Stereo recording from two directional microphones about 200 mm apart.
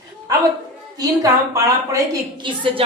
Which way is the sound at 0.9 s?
15° right (ahead or behind).